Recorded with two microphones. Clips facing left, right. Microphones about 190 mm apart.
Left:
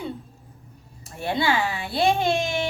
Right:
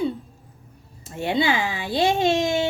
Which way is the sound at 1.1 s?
20° right (ahead or behind).